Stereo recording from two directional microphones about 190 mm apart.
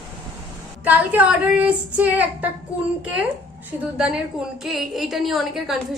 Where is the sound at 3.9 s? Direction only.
5° right (ahead or behind).